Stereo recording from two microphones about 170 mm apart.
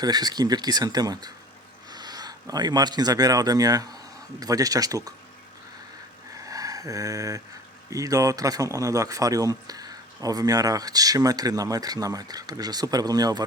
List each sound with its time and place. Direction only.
0.0 s speech: 25° right (ahead or behind)
6.3 s a sound: 20° right (ahead or behind)
7.9 s speech: 20° right (ahead or behind)